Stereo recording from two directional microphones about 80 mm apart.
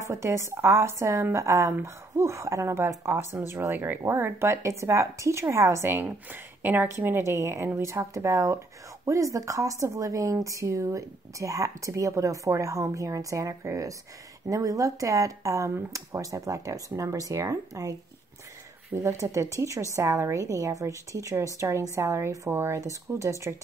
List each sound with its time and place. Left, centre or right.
0.1 s speech: right
6.0 s speech: right
19.0 s speech: right